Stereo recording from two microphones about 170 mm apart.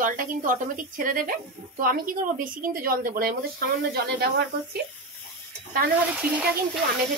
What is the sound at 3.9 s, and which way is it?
Speech, 80° right.